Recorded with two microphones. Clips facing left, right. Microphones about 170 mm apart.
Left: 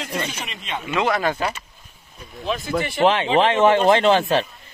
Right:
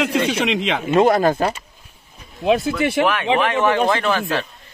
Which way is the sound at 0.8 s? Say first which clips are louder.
Right 6 dB; 45° right (ahead or behind).